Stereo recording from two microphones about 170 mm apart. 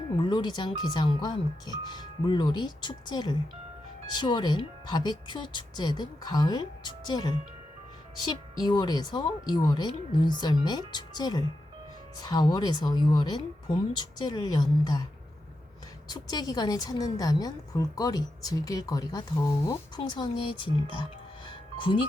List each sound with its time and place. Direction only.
0.2 s a woman's voice: 25° left (ahead or behind)
16.0 s a woman's voice: 25° left (ahead or behind)